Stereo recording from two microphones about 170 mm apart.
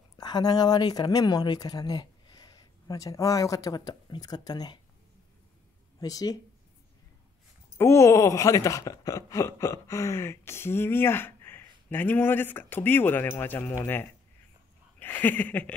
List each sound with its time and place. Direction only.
0.2 s speech: 25° left (ahead or behind)
5.9 s speech: 20° left (ahead or behind)
7.7 s speech: 15° left (ahead or behind)
15.0 s speech: 10° left (ahead or behind)